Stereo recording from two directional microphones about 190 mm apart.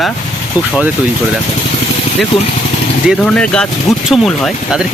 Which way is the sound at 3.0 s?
Centre (ahead or behind).